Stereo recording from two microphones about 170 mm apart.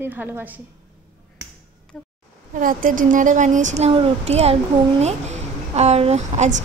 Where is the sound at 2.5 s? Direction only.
50° right (ahead or behind).